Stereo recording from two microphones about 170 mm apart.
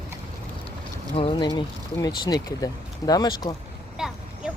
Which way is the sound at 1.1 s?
30° left (ahead or behind).